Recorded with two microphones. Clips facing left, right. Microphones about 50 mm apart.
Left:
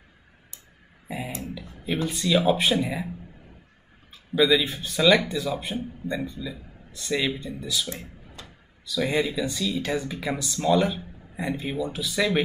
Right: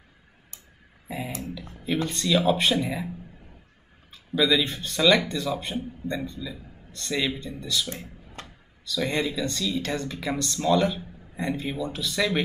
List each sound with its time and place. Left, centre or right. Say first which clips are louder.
1.0 s speech: even; centre
4.1 s speech: left 2 dB; centre
7.9 s a sound: even; centre
8.8 s speech: left 2 dB; centre